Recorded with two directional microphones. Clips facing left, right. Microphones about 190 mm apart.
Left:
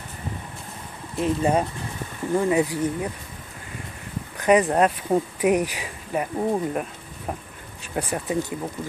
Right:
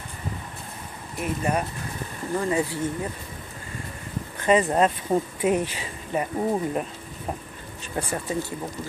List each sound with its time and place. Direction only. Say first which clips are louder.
1.1 s speech: left 5 dB; 25° left (ahead or behind)
2.3 s speech: left 4 dB; 15° left (ahead or behind)
4.4 s speech: left 2 dB; 15° left (ahead or behind)
8.1 s speech: left 3 dB; 15° left (ahead or behind)